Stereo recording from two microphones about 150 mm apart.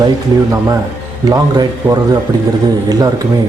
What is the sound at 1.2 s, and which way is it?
Speech, 25° right (ahead or behind).